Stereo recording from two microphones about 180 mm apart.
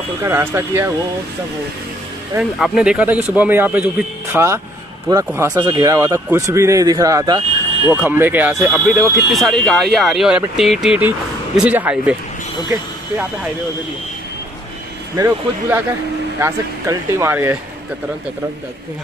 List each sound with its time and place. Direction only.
0.2 s speech: 15° right (ahead or behind)
2.3 s speech: 5° right (ahead or behind); by 8.0 s 20° right (ahead or behind)
8.0 s speech: 10° right (ahead or behind)
9.1 s speech: centre (ahead or behind)
15.1 s speech: 15° right (ahead or behind)